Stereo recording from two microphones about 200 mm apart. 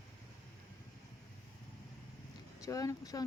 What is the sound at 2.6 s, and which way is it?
Speech, 15° left (ahead or behind).